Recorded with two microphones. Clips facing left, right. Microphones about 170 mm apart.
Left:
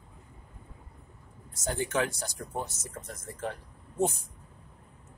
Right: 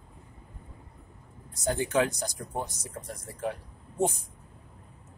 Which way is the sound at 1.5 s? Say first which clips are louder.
Right 3 dB; 15° right (ahead or behind).